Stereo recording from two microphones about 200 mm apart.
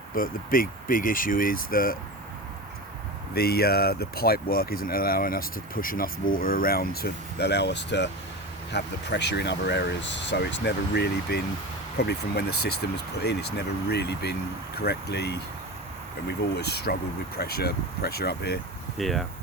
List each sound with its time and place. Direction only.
0.2 s speech: 45° left (ahead or behind)
3.3 s speech: 50° left (ahead or behind)
13.9 s speech: 55° left (ahead or behind)
16.6 s speech: 55° left (ahead or behind)
18.9 s speech: centre (ahead or behind)